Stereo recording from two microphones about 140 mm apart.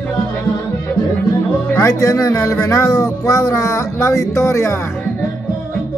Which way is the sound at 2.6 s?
25° left (ahead or behind).